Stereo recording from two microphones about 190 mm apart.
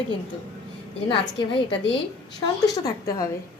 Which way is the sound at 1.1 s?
25° left (ahead or behind).